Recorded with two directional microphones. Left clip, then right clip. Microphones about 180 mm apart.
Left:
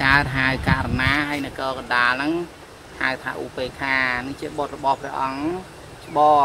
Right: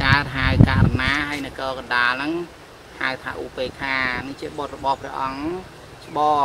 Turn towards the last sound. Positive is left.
turn(degrees=25)  # may be behind; listen again after turning